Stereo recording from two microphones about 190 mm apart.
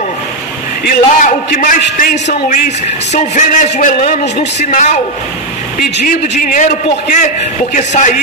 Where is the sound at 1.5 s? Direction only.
45° left (ahead or behind).